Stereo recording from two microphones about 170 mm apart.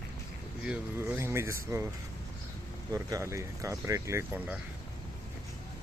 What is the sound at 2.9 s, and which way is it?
Speech, 20° right (ahead or behind).